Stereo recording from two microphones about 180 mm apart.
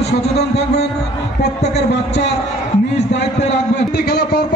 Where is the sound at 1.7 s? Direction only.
70° left (ahead or behind).